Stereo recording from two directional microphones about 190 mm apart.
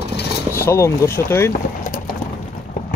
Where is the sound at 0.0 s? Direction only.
60° left (ahead or behind).